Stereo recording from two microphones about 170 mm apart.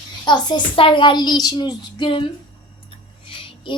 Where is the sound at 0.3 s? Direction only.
25° left (ahead or behind).